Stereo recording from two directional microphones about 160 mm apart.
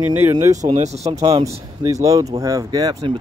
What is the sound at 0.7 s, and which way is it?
Speech, 45° right (ahead or behind).